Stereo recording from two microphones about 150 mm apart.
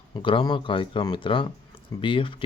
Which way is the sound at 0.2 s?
35° left (ahead or behind).